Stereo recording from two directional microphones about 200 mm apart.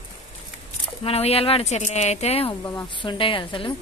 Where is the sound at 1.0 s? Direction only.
30° left (ahead or behind).